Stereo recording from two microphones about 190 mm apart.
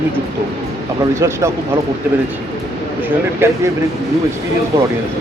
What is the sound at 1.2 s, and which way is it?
Speech, 15° right (ahead or behind).